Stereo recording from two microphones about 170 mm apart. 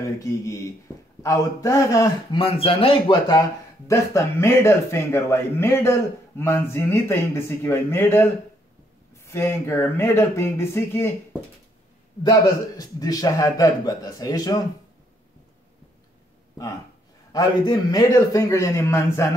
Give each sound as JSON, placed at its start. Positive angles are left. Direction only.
{"t": 0.0, "sound": "a man's voice", "side_deg": 20}
{"t": 2.3, "sound": "speech", "side_deg": 35}
{"t": 12.2, "sound": "a man's voice", "side_deg": 25}
{"t": 17.3, "sound": "a man's voice", "side_deg": 20}